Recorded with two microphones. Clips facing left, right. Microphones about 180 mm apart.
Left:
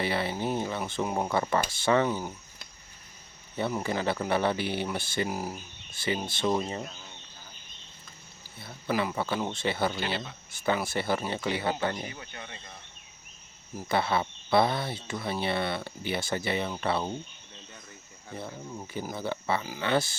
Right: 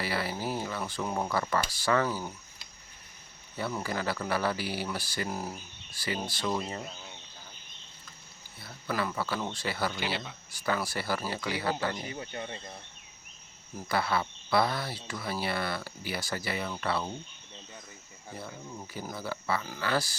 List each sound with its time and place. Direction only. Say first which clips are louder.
0.0 s speech: left 3 dB; 25° left (ahead or behind)
3.6 s speech: left 4 dB; 20° left (ahead or behind)
5.3 s speech: left 2 dB; 10° left (ahead or behind)
5.9 s speech: left 3 dB; 25° left (ahead or behind)
8.6 s speech: left 3 dB; 20° left (ahead or behind)
12.1 s speech: right 5 dB; 30° right (ahead or behind)
13.8 s speech: left 2 dB; 25° left (ahead or behind)
18.3 s speech: left 3 dB; 25° left (ahead or behind)
19.1 s speech: left 2 dB; 25° left (ahead or behind)